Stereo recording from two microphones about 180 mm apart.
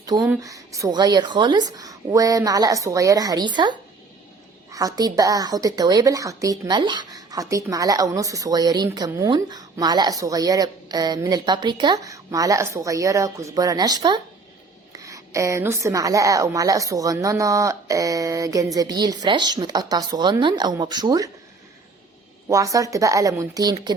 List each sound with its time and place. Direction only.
0.1 s a woman's voice: 20° right (ahead or behind)
22.4 s a woman's voice: 20° right (ahead or behind)